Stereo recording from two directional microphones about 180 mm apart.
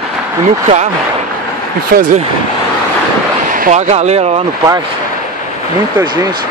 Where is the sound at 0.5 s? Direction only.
40° right (ahead or behind).